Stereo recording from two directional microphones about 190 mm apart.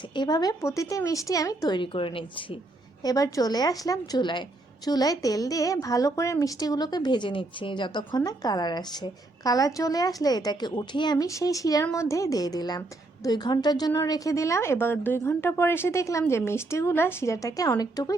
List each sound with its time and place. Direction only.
0.1 s a woman's voice: 20° left (ahead or behind)